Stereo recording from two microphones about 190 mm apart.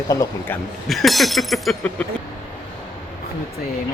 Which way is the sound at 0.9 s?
Centre (ahead or behind).